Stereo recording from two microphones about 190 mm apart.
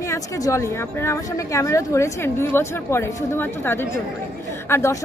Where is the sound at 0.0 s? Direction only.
15° left (ahead or behind).